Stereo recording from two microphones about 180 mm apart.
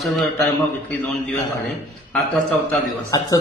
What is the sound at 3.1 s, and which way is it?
Speech, 20° left (ahead or behind).